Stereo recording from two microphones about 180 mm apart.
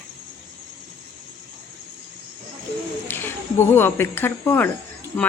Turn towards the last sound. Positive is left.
turn(degrees=15)  # may be behind; listen again after turning